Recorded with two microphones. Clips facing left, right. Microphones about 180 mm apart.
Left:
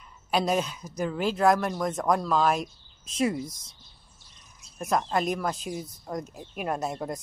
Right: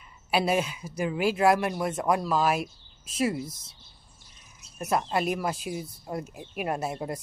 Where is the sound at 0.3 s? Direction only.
10° right (ahead or behind).